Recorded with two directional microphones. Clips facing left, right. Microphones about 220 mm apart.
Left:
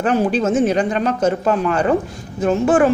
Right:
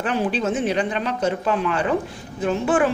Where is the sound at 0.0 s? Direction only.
45° left (ahead or behind).